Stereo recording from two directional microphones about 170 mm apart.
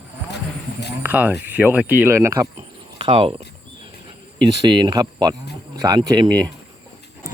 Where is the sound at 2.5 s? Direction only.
30° right (ahead or behind).